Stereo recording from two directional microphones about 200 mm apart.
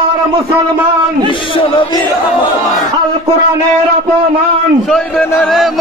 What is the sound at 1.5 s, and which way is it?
Speech, 25° left (ahead or behind).